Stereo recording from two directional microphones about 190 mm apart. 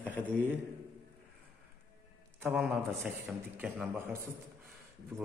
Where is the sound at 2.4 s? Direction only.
5° right (ahead or behind).